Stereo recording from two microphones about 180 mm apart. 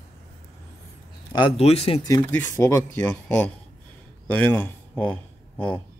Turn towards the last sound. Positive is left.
turn(degrees=10)  # may be behind; listen again after turning